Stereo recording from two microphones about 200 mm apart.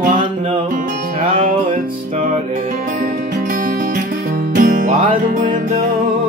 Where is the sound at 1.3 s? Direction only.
40° right (ahead or behind).